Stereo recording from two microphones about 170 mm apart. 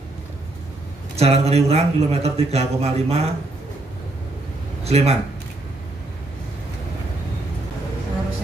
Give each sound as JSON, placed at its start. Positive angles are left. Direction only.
{"t": 1.1, "sound": "speech", "side_deg": -40}
{"t": 4.8, "sound": "speech", "side_deg": -35}